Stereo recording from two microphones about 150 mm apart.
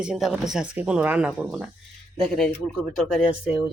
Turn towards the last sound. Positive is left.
turn(degrees=-5)  # may be behind; listen again after turning